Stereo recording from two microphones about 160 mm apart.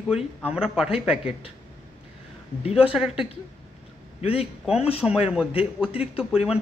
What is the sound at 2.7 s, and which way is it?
Speech, 5° right (ahead or behind).